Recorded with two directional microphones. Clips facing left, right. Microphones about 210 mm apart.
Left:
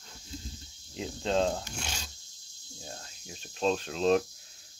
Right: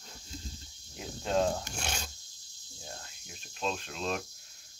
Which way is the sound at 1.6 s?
55° right (ahead or behind).